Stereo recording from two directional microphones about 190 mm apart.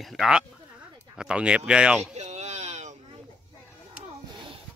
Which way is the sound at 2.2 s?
35° right (ahead or behind).